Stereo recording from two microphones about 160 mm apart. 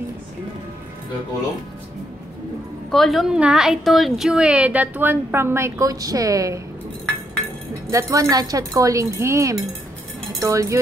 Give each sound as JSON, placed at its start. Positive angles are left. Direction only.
{"t": 2.9, "sound": "a woman's voice", "side_deg": 0}
{"t": 7.9, "sound": "speech", "side_deg": -20}